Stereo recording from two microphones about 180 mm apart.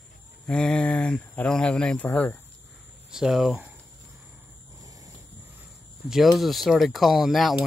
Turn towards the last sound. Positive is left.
turn(degrees=0)  # may be behind; listen again after turning